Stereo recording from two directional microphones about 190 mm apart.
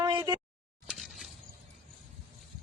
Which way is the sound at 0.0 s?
20° right (ahead or behind).